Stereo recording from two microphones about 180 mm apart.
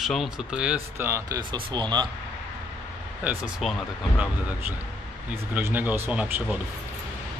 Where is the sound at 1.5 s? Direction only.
25° right (ahead or behind).